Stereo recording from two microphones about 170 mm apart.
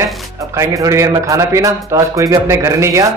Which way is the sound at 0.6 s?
15° right (ahead or behind).